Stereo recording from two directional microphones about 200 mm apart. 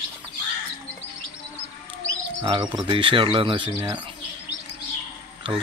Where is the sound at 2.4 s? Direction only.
20° right (ahead or behind).